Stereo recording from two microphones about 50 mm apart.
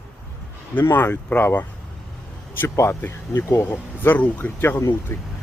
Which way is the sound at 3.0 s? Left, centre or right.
Left.